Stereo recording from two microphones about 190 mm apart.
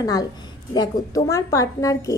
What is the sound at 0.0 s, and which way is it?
A woman's voice, 20° left (ahead or behind).